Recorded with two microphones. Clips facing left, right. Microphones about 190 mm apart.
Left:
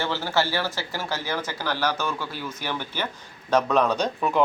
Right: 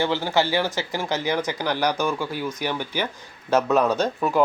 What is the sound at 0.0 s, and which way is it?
Speech, 15° right (ahead or behind).